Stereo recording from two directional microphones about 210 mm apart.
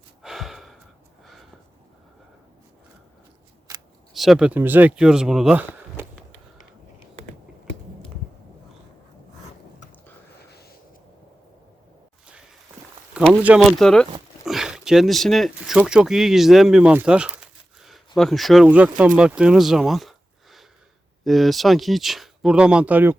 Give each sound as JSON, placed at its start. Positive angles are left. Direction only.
{"t": 0.2, "sound": "gasp", "side_deg": 0}
{"t": 1.2, "sound": "a sound", "side_deg": 0}
{"t": 4.1, "sound": "speech", "side_deg": 0}
{"t": 13.1, "sound": "speech", "side_deg": -5}